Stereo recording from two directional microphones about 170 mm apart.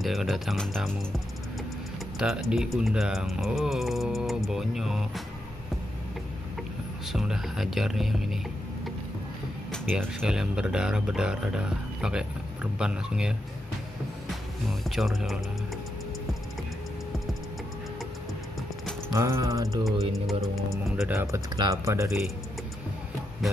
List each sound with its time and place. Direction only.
0.0 s speech: centre (ahead or behind)
7.1 s speech: centre (ahead or behind)
9.8 s speech: 5° right (ahead or behind)
14.7 s speech: centre (ahead or behind)
19.1 s music: 15° right (ahead or behind)
20.7 s speech: centre (ahead or behind)
21.1 s speech: 15° right (ahead or behind)